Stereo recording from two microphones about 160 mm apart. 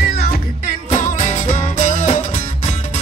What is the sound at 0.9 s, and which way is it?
Music, 50° left (ahead or behind).